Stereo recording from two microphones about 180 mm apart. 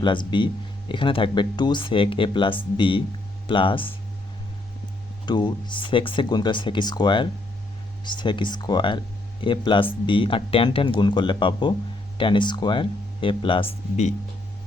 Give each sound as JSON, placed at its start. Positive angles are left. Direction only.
{"t": 0.0, "sound": "speech", "side_deg": 25}
{"t": 5.2, "sound": "speech", "side_deg": 25}